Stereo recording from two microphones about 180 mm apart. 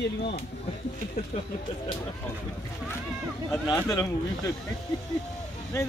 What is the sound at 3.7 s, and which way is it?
Speech, 20° left (ahead or behind).